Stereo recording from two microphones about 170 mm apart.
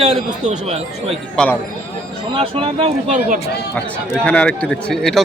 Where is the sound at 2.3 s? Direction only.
30° right (ahead or behind).